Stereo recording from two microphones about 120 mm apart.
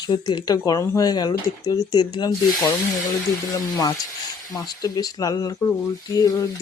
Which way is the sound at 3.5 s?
30° left (ahead or behind).